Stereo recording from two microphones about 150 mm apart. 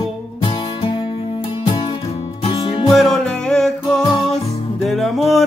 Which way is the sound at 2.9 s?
Centre (ahead or behind).